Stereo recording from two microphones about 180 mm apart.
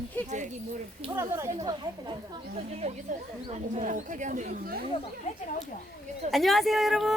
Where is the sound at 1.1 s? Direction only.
15° right (ahead or behind).